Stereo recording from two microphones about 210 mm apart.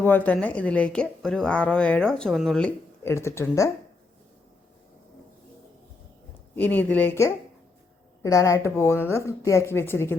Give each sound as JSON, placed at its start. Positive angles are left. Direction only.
{"t": 0.0, "sound": "a woman's voice", "side_deg": 10}
{"t": 6.6, "sound": "a woman's voice", "side_deg": 10}